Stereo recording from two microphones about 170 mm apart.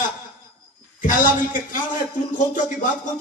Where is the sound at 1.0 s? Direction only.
50° left (ahead or behind).